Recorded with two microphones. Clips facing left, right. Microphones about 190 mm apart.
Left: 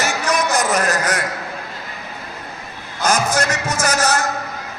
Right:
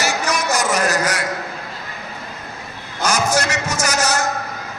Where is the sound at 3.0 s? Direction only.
55° left (ahead or behind).